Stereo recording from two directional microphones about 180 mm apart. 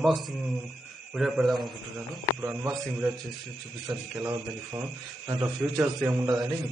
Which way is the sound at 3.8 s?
20° right (ahead or behind).